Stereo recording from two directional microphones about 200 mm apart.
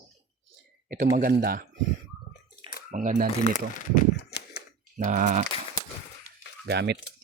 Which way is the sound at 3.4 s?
40° left (ahead or behind).